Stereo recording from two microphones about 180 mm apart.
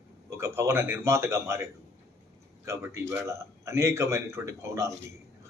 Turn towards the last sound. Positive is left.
turn(degrees=-15)  # may be behind; listen again after turning